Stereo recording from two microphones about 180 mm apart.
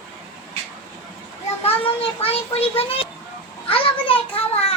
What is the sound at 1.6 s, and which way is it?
A child's voice, 30° left (ahead or behind).